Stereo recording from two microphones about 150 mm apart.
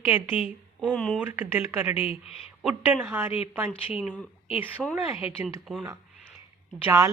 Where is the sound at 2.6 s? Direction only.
15° right (ahead or behind).